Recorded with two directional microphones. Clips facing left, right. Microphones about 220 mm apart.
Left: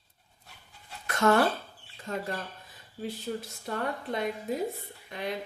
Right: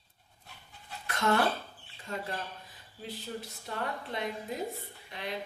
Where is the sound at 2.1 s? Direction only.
45° left (ahead or behind).